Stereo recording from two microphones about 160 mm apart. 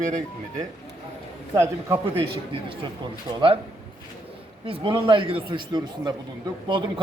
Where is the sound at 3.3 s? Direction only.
30° right (ahead or behind).